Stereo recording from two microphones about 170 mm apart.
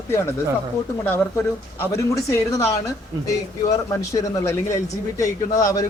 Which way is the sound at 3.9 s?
20° left (ahead or behind).